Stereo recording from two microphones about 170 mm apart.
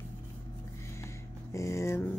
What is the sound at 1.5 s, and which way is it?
Speech, 15° left (ahead or behind).